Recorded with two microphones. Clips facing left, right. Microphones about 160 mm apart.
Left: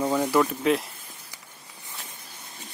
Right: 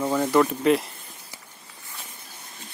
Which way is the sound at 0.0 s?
10° left (ahead or behind).